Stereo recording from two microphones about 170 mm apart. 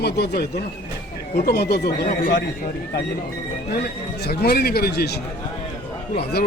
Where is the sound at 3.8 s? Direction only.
70° left (ahead or behind).